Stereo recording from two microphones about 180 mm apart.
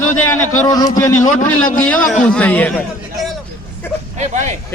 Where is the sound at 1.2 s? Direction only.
45° left (ahead or behind).